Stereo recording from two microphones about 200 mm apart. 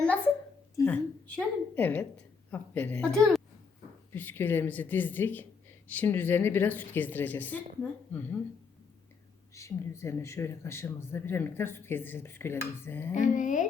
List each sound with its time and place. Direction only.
0.8 s a woman's voice: 10° left (ahead or behind)
9.6 s speech: 15° left (ahead or behind)
13.1 s speech: 40° left (ahead or behind)